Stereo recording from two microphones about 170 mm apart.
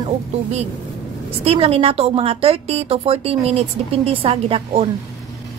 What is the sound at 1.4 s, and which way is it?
A woman's voice, 35° right (ahead or behind).